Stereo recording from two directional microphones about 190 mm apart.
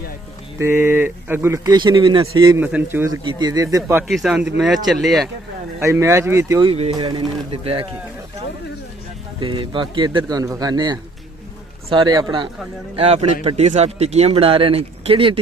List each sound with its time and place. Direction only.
0.6 s speech: 10° right (ahead or behind)
2.5 s speech: 10° right (ahead or behind)
3.8 s a man's voice: centre (ahead or behind)
5.9 s speech: 15° right (ahead or behind)
6.6 s speech: 30° right (ahead or behind)
9.4 s a man's voice: 25° right (ahead or behind)